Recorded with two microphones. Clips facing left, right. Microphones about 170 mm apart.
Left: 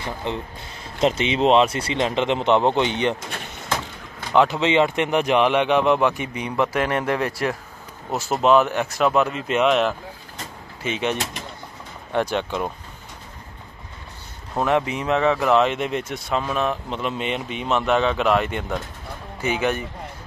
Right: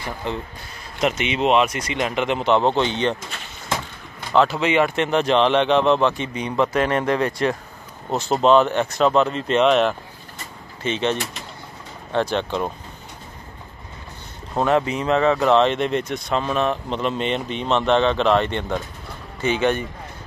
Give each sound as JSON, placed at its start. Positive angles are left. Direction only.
{"t": 0.0, "sound": "speech", "side_deg": 20}
{"t": 4.3, "sound": "speech", "side_deg": 20}
{"t": 14.9, "sound": "speech", "side_deg": 10}